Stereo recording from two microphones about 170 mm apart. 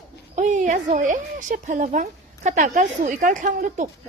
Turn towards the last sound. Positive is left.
turn(degrees=-50)  # may be behind; listen again after turning